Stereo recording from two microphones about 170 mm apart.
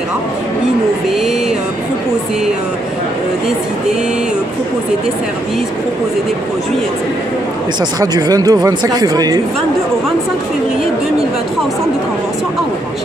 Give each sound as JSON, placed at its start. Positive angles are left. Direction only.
{"t": 8.0, "sound": "speech", "side_deg": -20}